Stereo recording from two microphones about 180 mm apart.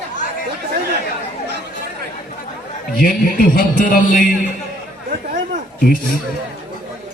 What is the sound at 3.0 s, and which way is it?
A man's voice, 50° left (ahead or behind).